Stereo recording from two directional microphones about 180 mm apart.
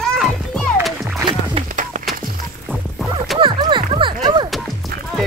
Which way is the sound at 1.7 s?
45° right (ahead or behind).